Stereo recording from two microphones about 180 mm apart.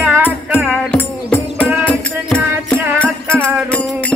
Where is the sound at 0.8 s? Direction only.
10° left (ahead or behind).